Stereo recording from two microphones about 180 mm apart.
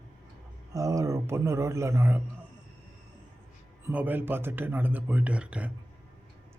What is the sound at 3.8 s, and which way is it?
A man's voice, 10° right (ahead or behind).